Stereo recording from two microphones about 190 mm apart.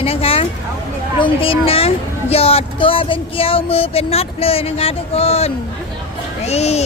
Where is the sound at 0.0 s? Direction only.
30° left (ahead or behind).